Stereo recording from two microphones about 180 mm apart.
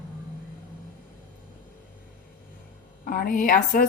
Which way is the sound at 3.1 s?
50° left (ahead or behind).